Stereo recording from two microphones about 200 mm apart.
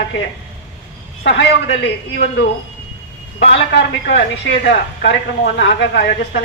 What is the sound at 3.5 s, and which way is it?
A woman's voice, 55° left (ahead or behind).